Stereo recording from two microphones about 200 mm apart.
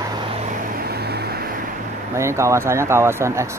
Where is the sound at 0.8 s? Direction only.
50° right (ahead or behind).